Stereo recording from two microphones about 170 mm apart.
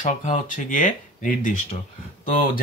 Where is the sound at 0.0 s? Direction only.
50° left (ahead or behind).